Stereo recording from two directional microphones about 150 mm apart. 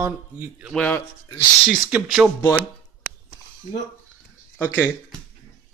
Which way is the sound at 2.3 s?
15° left (ahead or behind).